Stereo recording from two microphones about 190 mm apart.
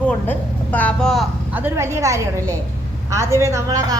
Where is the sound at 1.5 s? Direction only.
10° right (ahead or behind).